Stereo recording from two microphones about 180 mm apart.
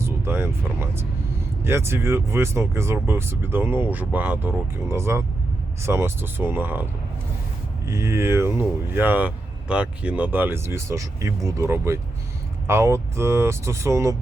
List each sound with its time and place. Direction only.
0.0 s speech: 15° right (ahead or behind)
7.9 s speech: 15° right (ahead or behind)